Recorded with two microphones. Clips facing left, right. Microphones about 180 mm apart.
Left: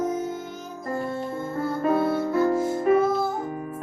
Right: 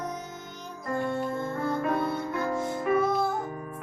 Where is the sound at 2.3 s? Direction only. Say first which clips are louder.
Left 7 dB; 25° left (ahead or behind).